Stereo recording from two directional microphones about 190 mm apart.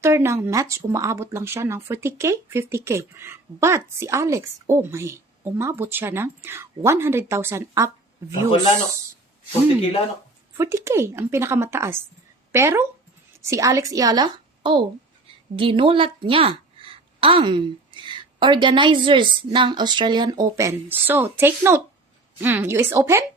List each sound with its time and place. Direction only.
0.0 s speech: 15° right (ahead or behind)
10.6 s a woman's voice: 15° right (ahead or behind)